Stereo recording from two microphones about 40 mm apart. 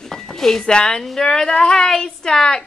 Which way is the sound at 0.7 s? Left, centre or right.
Centre.